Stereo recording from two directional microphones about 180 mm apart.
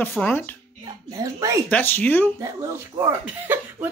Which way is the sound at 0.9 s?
20° right (ahead or behind).